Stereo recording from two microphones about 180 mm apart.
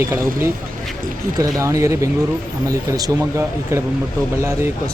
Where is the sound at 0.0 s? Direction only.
15° right (ahead or behind).